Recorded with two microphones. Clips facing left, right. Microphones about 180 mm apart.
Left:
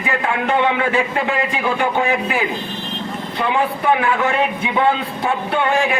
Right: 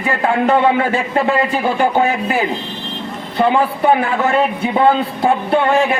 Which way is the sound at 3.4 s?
40° right (ahead or behind).